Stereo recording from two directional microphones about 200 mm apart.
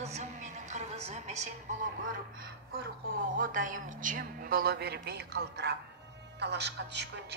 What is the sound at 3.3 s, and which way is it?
A man's voice, 40° right (ahead or behind).